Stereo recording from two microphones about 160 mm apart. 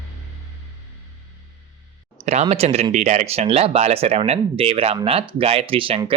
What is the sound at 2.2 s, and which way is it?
Speech, 40° right (ahead or behind).